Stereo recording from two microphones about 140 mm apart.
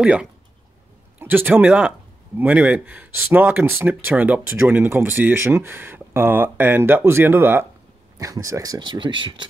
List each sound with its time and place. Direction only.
0.0 s a man's voice: 5° right (ahead or behind); by 9.5 s 35° right (ahead or behind)